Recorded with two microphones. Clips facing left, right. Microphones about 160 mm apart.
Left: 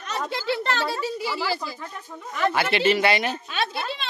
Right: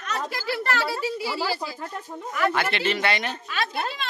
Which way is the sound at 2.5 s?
5° left (ahead or behind).